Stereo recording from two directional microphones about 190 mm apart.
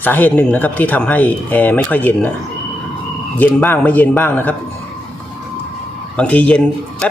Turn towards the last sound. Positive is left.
turn(degrees=5)  # may be behind; listen again after turning